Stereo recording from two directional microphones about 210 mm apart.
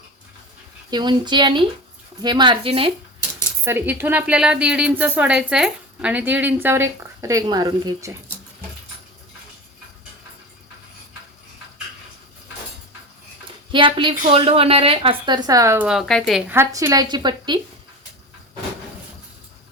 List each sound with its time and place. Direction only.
0.9 s a woman's voice: 20° right (ahead or behind)
3.6 s a woman's voice: 10° right (ahead or behind)
13.7 s a woman's voice: 25° right (ahead or behind)
15.9 s speech: centre (ahead or behind)
16.5 s a woman's voice: 10° right (ahead or behind)